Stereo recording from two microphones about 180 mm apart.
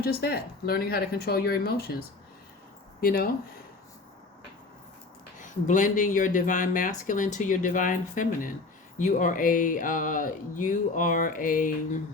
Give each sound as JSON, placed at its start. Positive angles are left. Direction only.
{"t": 0.0, "sound": "speech", "side_deg": 60}
{"t": 5.4, "sound": "speech", "side_deg": 45}